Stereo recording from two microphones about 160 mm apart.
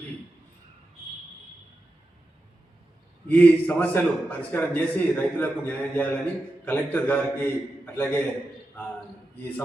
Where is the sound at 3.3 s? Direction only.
10° left (ahead or behind).